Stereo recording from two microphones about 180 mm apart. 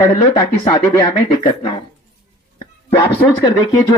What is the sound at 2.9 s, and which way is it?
Speech, 25° left (ahead or behind).